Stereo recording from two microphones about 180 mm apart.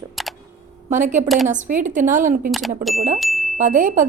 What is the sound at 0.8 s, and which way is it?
A woman's voice, 45° right (ahead or behind).